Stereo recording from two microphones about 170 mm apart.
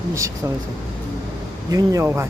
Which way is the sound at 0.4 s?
15° right (ahead or behind).